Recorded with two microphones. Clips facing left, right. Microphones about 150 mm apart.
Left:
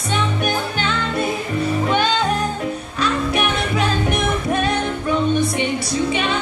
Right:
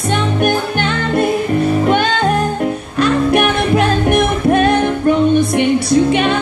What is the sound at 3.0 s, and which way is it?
Music, 55° right (ahead or behind).